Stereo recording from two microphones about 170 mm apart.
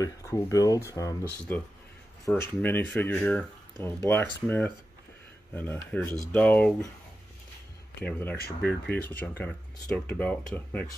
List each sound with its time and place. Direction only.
0.0 s speech: 20° left (ahead or behind)
8.0 s speech: 10° left (ahead or behind)